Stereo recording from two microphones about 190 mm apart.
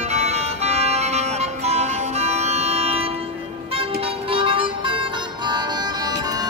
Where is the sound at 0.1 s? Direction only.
35° right (ahead or behind).